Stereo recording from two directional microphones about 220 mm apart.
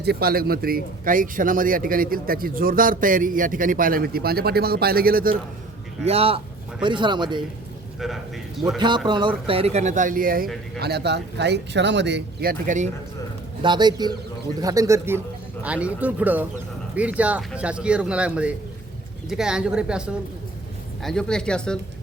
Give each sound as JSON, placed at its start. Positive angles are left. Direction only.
{"t": 0.0, "sound": "speech", "side_deg": -45}
{"t": 6.1, "sound": "speech", "side_deg": -25}
{"t": 7.9, "sound": "a man's voice", "side_deg": 0}
{"t": 9.0, "sound": "speech", "side_deg": -20}
{"t": 13.6, "sound": "speech", "side_deg": -20}